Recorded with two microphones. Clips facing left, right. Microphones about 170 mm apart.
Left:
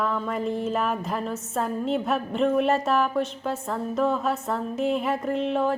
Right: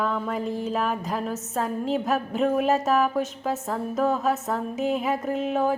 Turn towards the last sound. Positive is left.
turn(degrees=-5)  # may be behind; listen again after turning